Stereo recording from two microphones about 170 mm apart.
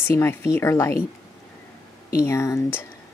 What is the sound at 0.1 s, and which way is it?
Speech, 15° left (ahead or behind).